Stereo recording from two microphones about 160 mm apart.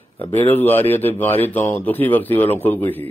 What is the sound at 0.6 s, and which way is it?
Speech, 10° left (ahead or behind).